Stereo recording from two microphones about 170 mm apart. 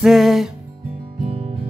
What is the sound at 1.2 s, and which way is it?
Music, 35° right (ahead or behind).